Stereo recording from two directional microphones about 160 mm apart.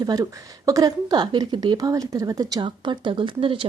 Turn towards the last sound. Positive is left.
turn(degrees=-35)  # may be behind; listen again after turning